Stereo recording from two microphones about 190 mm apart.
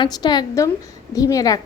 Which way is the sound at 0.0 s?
20° left (ahead or behind).